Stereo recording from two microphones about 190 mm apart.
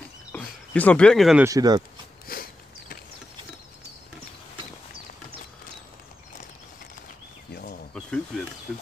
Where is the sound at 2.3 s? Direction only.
50° left (ahead or behind).